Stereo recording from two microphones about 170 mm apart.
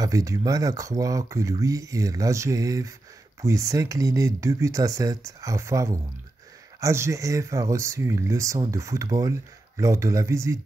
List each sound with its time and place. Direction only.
0.0 s speech: 20° right (ahead or behind)